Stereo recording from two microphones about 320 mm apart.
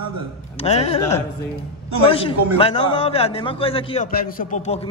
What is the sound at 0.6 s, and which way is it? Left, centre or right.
Speech, centre.